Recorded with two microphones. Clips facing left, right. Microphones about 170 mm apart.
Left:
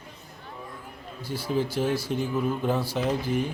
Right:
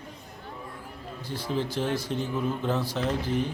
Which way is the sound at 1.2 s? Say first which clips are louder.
Left 3 dB; 10° left (ahead or behind).